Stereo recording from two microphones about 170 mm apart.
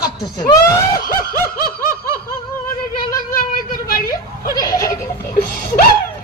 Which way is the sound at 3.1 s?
55° left (ahead or behind).